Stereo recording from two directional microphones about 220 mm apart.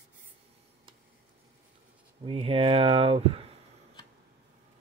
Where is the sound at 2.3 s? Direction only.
25° right (ahead or behind).